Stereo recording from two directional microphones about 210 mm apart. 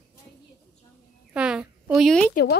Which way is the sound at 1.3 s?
5° right (ahead or behind).